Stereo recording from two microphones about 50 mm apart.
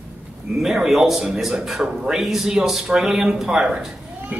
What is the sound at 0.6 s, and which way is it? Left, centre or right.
Speech, centre.